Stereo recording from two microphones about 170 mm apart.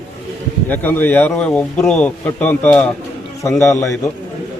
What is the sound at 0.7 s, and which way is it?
Speech, 10° left (ahead or behind).